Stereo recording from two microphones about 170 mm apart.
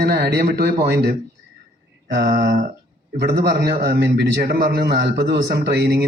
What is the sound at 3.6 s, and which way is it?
Speech, 75° right (ahead or behind).